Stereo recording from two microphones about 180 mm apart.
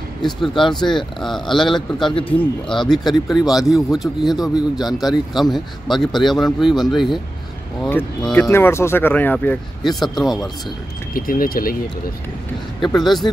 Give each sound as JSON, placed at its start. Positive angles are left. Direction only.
{"t": 0.2, "sound": "speech", "side_deg": 0}
{"t": 11.1, "sound": "speech", "side_deg": 50}
{"t": 13.0, "sound": "speech", "side_deg": 0}